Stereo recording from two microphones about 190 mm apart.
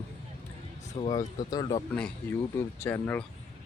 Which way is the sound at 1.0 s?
20° left (ahead or behind).